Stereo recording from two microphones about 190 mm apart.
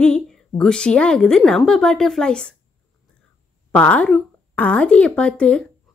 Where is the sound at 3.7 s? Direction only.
5° left (ahead or behind).